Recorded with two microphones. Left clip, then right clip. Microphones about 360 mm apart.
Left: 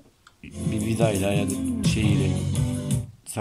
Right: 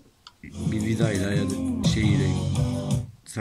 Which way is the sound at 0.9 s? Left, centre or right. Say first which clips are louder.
Left 5 dB; left.